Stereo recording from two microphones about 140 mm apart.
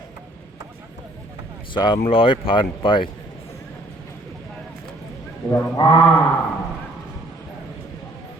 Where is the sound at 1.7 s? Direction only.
35° left (ahead or behind).